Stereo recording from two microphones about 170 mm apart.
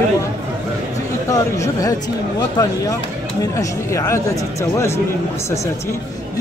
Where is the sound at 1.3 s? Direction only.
20° left (ahead or behind).